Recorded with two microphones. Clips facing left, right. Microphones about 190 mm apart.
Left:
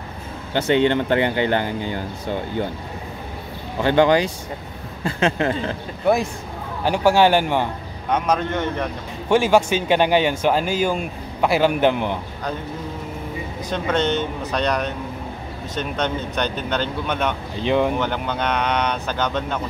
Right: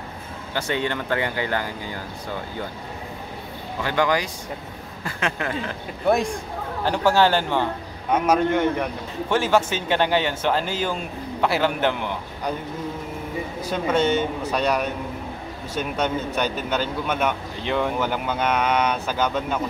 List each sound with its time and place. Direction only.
0.6 s speech: 25° left (ahead or behind)
3.8 s speech: 25° left (ahead or behind)
6.0 s speech: 5° left (ahead or behind)
8.1 s speech: 10° right (ahead or behind)
9.3 s speech: 15° left (ahead or behind)
13.7 s speech: 10° right (ahead or behind)
17.6 s speech: 20° left (ahead or behind)
17.9 s speech: 10° right (ahead or behind)